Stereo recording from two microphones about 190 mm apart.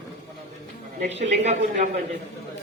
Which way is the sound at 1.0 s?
35° right (ahead or behind).